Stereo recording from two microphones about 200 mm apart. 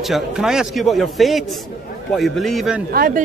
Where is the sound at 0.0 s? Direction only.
Centre (ahead or behind).